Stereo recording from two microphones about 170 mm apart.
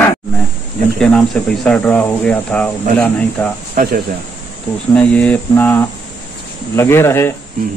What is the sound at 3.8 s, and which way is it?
Speech, 55° right (ahead or behind).